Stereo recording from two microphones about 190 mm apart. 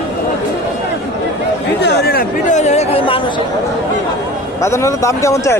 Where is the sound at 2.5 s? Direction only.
35° left (ahead or behind).